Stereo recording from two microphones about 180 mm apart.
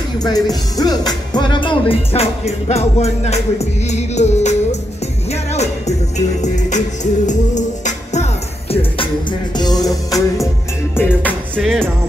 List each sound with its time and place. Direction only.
0.2 s music: 20° left (ahead or behind)
11.0 s music: 15° left (ahead or behind)
11.5 s music: centre (ahead or behind)